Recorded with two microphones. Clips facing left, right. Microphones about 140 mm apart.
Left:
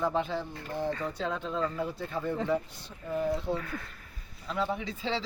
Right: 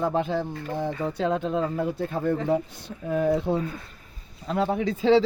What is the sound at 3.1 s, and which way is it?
Speech, 65° right (ahead or behind).